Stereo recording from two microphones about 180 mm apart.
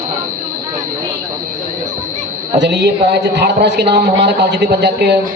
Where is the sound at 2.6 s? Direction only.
75° right (ahead or behind).